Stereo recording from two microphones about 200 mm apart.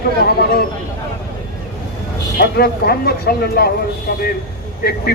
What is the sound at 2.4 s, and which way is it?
Speech, 50° left (ahead or behind).